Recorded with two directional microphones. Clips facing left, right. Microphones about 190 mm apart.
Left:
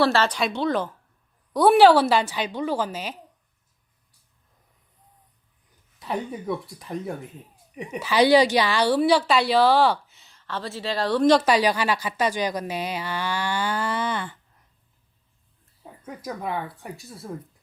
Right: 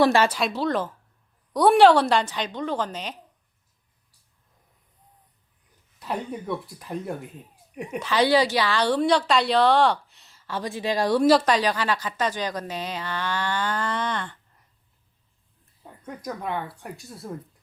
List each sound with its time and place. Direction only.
0.0 s speech: 15° right (ahead or behind)
0.3 s a woman's voice: centre (ahead or behind)
6.0 s a woman's voice: centre (ahead or behind)
11.4 s a woman's voice: 10° left (ahead or behind)
16.0 s a woman's voice: 5° left (ahead or behind)